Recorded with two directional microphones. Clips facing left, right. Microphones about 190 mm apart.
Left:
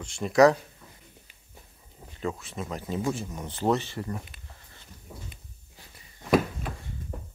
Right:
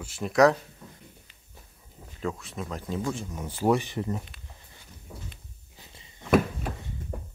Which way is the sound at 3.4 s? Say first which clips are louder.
Right 2 dB; 10° right (ahead or behind).